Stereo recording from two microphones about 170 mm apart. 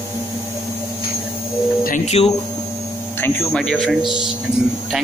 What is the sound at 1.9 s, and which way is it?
Speech, 45° left (ahead or behind).